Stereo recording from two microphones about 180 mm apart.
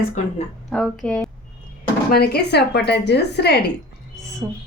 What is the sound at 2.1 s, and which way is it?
A woman's voice, 60° left (ahead or behind).